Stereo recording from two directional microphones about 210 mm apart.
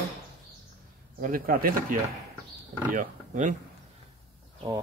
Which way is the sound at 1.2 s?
40° right (ahead or behind).